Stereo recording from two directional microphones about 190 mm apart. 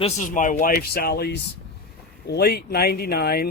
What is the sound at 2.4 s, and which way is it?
Speech, 55° left (ahead or behind).